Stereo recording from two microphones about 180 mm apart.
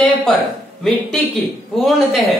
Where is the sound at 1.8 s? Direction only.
Centre (ahead or behind).